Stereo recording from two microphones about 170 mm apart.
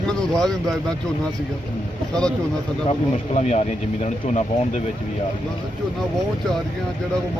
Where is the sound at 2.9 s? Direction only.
40° left (ahead or behind).